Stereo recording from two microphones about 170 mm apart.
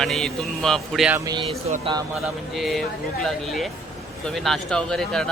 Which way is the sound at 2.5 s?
Centre (ahead or behind).